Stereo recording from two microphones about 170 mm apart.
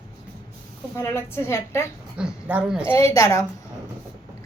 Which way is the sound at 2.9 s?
20° left (ahead or behind).